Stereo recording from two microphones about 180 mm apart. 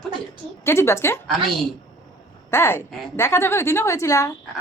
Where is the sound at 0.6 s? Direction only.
15° left (ahead or behind).